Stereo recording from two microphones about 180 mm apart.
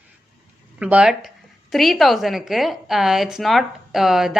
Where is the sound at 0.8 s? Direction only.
5° right (ahead or behind).